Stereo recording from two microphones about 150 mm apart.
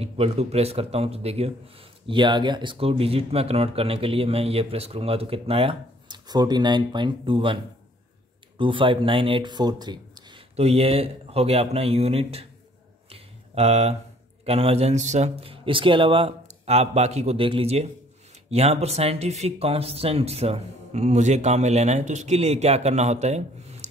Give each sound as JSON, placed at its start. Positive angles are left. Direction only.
{"t": 0.0, "sound": "speech", "side_deg": -45}
{"t": 2.0, "sound": "speech", "side_deg": -30}
{"t": 10.5, "sound": "speech", "side_deg": -45}
{"t": 13.1, "sound": "a sound", "side_deg": -45}
{"t": 14.4, "sound": "speech", "side_deg": -40}